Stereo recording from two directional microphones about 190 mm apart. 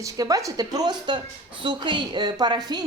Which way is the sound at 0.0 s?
20° right (ahead or behind).